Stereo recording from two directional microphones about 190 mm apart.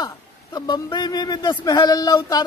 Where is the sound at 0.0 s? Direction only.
20° left (ahead or behind).